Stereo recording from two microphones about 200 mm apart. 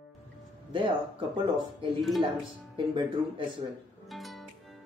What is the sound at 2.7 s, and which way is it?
Speech, 25° right (ahead or behind).